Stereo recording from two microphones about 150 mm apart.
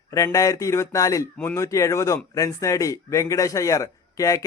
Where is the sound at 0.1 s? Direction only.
20° left (ahead or behind).